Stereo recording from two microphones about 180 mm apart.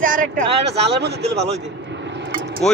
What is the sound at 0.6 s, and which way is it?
Speech, 70° right (ahead or behind).